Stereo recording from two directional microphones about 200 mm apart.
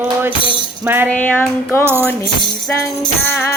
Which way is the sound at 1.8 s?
10° right (ahead or behind).